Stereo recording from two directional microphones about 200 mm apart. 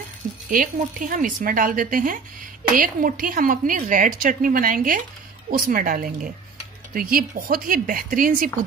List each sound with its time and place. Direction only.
0.5 s a woman's voice: 45° right (ahead or behind)